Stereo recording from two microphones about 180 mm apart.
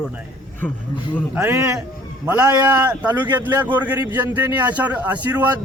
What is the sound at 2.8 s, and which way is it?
Speech, 10° right (ahead or behind).